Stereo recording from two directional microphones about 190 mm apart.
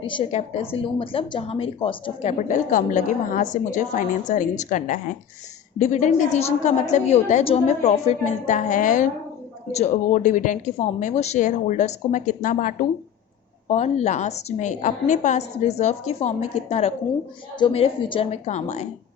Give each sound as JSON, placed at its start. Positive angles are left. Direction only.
{"t": 0.0, "sound": "a woman's voice", "side_deg": 25}
{"t": 2.4, "sound": "a woman's voice", "side_deg": 45}